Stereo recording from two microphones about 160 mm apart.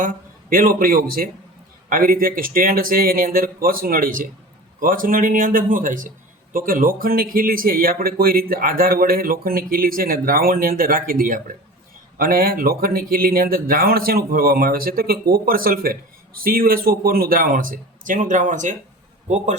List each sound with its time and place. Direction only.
0.5 s speech: 65° right (ahead or behind)